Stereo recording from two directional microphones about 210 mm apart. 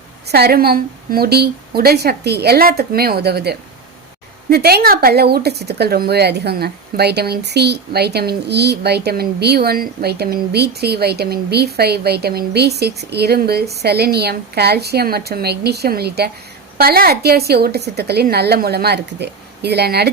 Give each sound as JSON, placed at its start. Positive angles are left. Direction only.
{"t": 0.3, "sound": "speech", "side_deg": -50}